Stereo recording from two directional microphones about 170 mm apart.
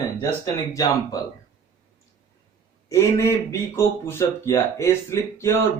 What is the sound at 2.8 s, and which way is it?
Speech, 15° left (ahead or behind).